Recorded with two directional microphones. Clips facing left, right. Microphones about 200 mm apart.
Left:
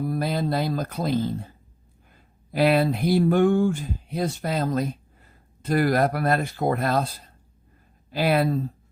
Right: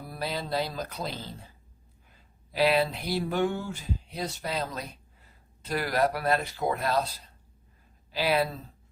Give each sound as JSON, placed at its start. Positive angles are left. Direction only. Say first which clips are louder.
{"t": 0.1, "sound": "speech", "louder": "left 7 dB", "side_deg": 50}